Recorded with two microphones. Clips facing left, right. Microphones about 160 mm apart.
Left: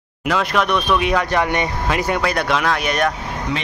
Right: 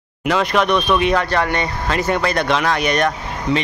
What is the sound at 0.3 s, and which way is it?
Speech, centre (ahead or behind).